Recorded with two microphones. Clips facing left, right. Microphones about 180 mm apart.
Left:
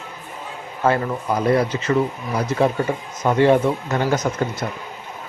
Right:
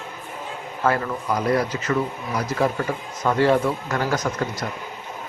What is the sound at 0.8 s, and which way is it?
Speech, 25° left (ahead or behind).